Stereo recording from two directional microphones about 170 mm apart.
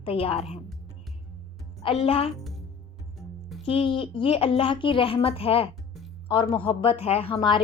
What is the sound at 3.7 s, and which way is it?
A woman's voice, 30° left (ahead or behind).